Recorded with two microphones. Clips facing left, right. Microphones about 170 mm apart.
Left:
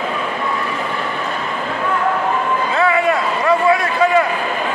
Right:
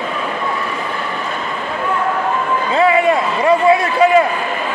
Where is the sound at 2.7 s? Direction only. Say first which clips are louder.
Right 4 dB; 25° right (ahead or behind).